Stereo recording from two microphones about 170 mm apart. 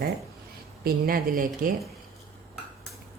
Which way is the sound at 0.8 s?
60° right (ahead or behind).